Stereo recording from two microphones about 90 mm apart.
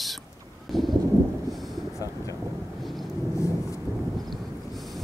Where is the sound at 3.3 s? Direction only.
35° left (ahead or behind).